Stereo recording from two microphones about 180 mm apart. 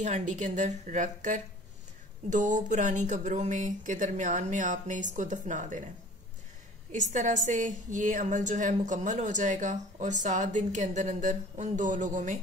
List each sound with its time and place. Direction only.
0.0 s speech: 40° right (ahead or behind)
6.9 s speech: 45° right (ahead or behind)